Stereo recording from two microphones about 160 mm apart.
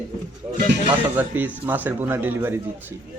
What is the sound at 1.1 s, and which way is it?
Speech, 10° right (ahead or behind).